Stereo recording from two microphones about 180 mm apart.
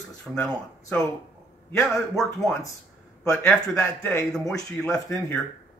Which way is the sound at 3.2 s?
15° left (ahead or behind).